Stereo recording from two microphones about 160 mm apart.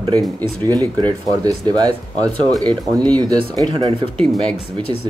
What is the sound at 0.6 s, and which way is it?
Speech, 25° right (ahead or behind).